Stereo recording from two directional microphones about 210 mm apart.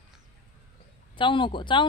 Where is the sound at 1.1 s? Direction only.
25° left (ahead or behind).